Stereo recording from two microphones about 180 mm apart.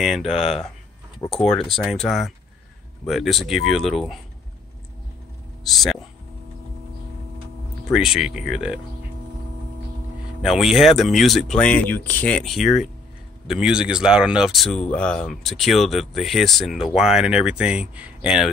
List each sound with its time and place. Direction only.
0.0 s speech: centre (ahead or behind)
5.7 s speech: centre (ahead or behind)
7.9 s speech: centre (ahead or behind)
10.4 s speech: centre (ahead or behind)